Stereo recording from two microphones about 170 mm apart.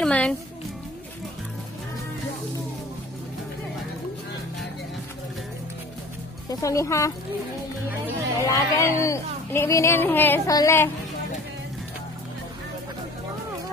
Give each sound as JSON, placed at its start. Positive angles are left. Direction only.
{"t": 0.0, "sound": "a child's voice", "side_deg": 5}
{"t": 6.5, "sound": "speech", "side_deg": 20}
{"t": 8.4, "sound": "speech", "side_deg": 20}